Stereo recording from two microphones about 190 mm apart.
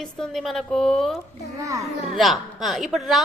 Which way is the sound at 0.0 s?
Centre (ahead or behind).